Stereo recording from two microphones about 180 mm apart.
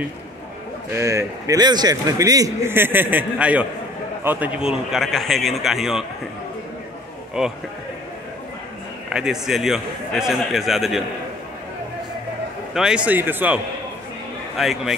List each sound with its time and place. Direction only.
0.9 s a man's voice: 15° right (ahead or behind)
9.1 s a man's voice: 5° right (ahead or behind)
12.7 s a man's voice: 5° right (ahead or behind)
14.6 s a man's voice: centre (ahead or behind)